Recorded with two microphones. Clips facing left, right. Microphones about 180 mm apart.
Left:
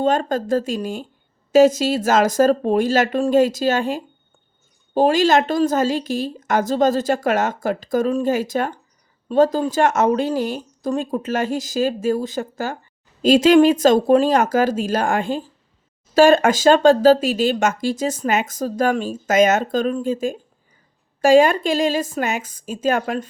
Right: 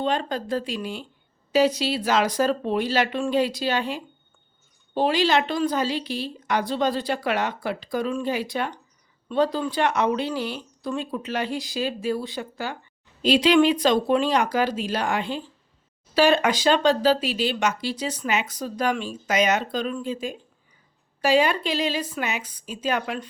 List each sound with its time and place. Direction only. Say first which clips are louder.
0.0 s speech: left 6 dB; 45° left (ahead or behind)